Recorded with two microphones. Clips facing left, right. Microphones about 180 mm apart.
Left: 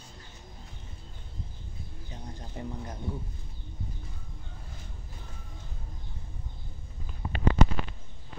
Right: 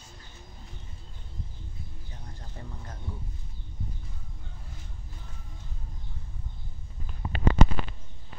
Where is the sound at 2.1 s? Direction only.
20° left (ahead or behind).